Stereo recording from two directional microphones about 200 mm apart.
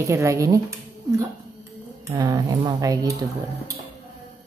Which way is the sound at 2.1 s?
20° right (ahead or behind).